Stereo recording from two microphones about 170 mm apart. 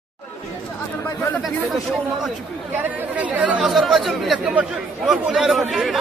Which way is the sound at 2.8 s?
10° right (ahead or behind).